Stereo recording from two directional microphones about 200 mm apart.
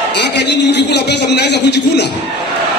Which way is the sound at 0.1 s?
60° left (ahead or behind).